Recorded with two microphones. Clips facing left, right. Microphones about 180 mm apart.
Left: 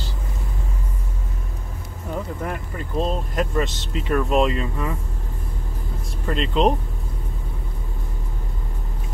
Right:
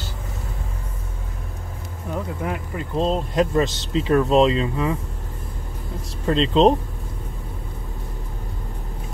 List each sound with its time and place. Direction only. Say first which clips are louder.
2.4 s speech: right 2 dB; 10° right (ahead or behind)
3.1 s speech: right 4 dB; 30° right (ahead or behind)
6.2 s speech: right 4 dB; 30° right (ahead or behind)